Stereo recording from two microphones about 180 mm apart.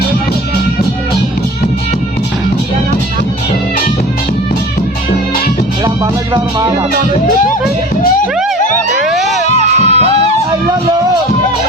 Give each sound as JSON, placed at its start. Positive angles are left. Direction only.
{"t": 9.0, "sound": "emergency vehicle", "side_deg": 0}
{"t": 9.7, "sound": "music", "side_deg": -40}